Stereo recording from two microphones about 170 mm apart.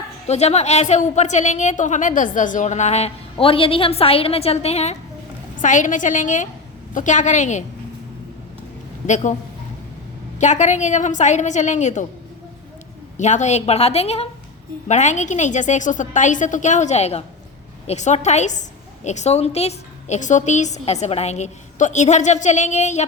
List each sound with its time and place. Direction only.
0.3 s a woman's voice: 40° left (ahead or behind)
9.0 s a woman's voice: 45° left (ahead or behind)
10.3 s a woman's voice: 45° left (ahead or behind)
13.1 s a woman's voice: 45° left (ahead or behind)